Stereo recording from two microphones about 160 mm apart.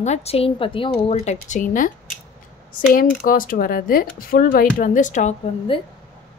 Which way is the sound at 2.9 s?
65° left (ahead or behind).